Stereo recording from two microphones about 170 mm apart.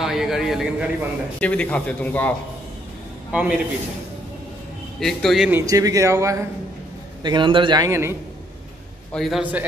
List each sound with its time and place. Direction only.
0.0 s a man's voice: centre (ahead or behind)
3.3 s a man's voice: 5° right (ahead or behind)
5.0 s a man's voice: centre (ahead or behind)
5.5 s a man's voice: 20° right (ahead or behind)
9.1 s a man's voice: centre (ahead or behind)